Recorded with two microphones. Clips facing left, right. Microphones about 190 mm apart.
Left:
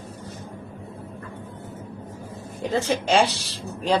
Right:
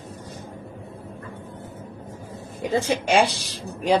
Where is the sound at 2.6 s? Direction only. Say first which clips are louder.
Right 1 dB; 15° right (ahead or behind).